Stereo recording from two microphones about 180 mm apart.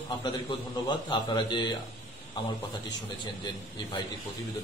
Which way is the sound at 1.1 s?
25° left (ahead or behind).